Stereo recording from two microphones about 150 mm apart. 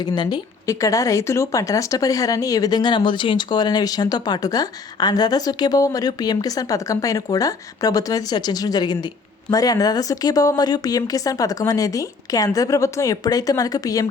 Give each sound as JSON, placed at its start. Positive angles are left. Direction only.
{"t": 0.0, "sound": "speech", "side_deg": 30}